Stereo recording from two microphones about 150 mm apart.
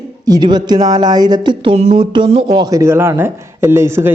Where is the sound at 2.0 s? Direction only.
30° right (ahead or behind).